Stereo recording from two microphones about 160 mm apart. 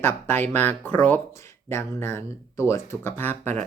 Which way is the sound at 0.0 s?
15° left (ahead or behind).